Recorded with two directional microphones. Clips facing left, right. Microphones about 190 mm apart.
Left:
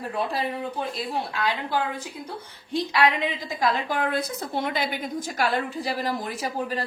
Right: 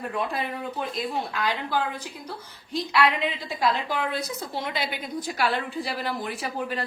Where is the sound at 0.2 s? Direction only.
30° left (ahead or behind).